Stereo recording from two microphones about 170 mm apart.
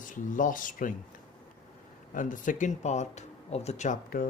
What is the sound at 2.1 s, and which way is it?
Speech, 50° left (ahead or behind).